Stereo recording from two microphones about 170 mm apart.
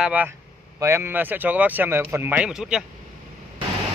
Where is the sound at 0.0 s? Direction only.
10° right (ahead or behind).